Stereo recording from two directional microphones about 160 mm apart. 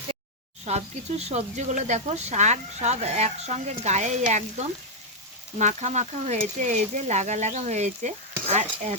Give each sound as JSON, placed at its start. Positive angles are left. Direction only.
{"t": 0.6, "sound": "speech", "side_deg": -45}